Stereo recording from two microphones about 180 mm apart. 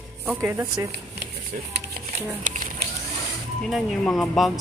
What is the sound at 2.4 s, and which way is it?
Speech, 45° right (ahead or behind).